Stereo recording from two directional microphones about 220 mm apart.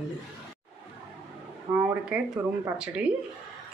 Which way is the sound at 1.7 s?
10° right (ahead or behind).